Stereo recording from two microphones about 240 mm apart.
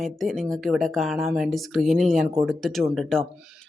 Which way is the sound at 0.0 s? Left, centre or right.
Centre.